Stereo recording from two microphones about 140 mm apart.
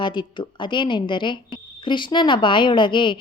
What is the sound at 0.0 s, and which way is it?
Speech, 35° left (ahead or behind).